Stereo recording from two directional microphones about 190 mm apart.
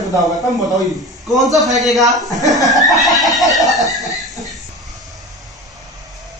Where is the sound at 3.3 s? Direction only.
Centre (ahead or behind).